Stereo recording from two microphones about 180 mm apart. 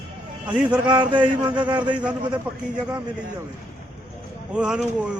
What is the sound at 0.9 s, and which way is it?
Speech, 25° right (ahead or behind).